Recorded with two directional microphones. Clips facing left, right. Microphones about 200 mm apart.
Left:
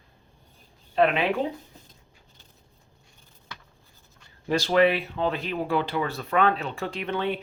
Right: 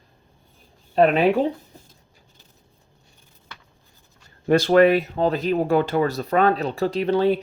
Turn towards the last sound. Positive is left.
turn(degrees=-35)  # may be behind; listen again after turning